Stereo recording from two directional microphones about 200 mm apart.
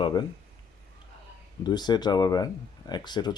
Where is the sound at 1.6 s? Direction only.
20° left (ahead or behind).